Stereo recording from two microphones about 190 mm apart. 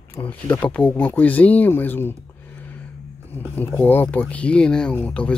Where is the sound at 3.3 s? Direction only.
10° left (ahead or behind).